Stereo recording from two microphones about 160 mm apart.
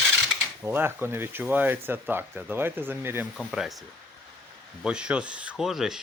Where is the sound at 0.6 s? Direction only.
15° right (ahead or behind).